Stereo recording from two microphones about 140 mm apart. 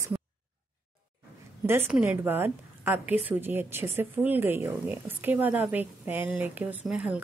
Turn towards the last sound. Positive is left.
turn(degrees=-10)  # may be behind; listen again after turning